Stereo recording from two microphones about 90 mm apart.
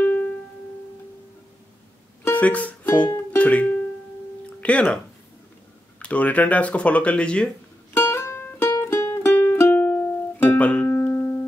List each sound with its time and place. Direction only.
0.0 s music: 20° left (ahead or behind)
2.2 s music: 20° left (ahead or behind)
3.3 s speech: 15° left (ahead or behind)
7.9 s music: 30° left (ahead or behind)
10.9 s music: 25° left (ahead or behind)